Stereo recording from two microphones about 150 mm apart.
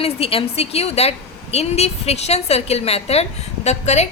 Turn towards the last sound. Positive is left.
turn(degrees=50)  # may be behind; listen again after turning